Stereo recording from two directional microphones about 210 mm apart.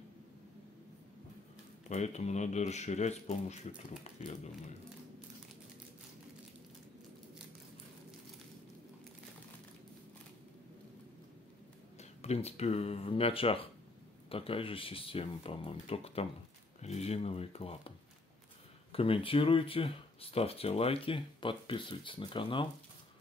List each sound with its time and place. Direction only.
1.9 s speech: 30° left (ahead or behind)
12.0 s speech: 30° left (ahead or behind)